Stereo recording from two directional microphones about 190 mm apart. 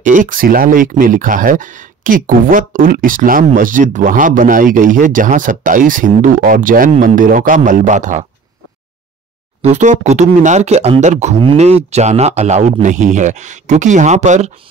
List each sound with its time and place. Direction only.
0.0 s speech: 45° right (ahead or behind)
9.6 s speech: 35° right (ahead or behind)